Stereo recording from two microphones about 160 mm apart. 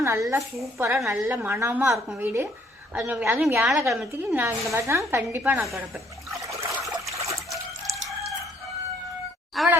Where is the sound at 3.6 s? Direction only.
Centre (ahead or behind).